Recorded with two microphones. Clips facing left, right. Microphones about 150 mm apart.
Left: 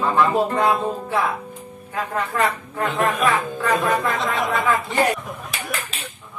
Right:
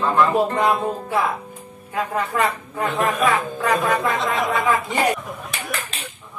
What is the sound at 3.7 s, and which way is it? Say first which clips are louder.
Speech: even; centre (ahead or behind).